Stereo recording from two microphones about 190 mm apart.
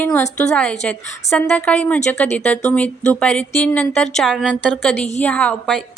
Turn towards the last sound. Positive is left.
turn(degrees=5)  # may be behind; listen again after turning